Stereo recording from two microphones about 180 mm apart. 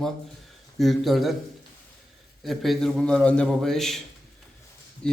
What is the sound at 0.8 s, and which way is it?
Speech, centre (ahead or behind).